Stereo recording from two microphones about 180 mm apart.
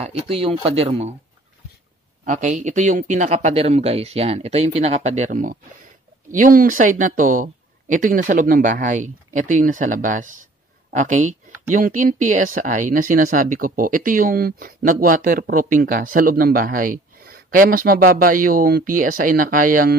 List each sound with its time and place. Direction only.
0.0 s speech: 35° right (ahead or behind)
2.2 s speech: 40° right (ahead or behind)